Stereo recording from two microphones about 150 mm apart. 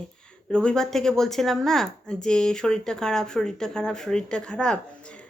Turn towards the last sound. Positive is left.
turn(degrees=5)  # may be behind; listen again after turning